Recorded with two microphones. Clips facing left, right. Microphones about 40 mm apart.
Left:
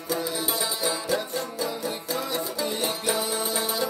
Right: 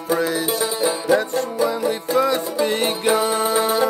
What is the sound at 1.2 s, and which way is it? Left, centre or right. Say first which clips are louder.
Music: right 8 dB; right.